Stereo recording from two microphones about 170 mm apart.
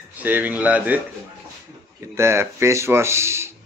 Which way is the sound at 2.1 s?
15° right (ahead or behind).